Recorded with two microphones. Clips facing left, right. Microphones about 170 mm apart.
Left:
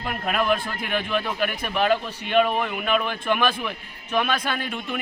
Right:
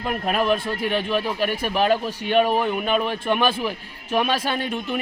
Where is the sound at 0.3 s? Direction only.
30° right (ahead or behind).